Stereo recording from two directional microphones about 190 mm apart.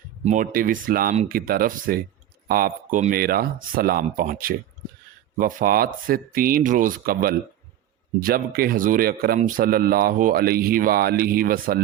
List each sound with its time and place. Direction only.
0.3 s speech: 45° right (ahead or behind)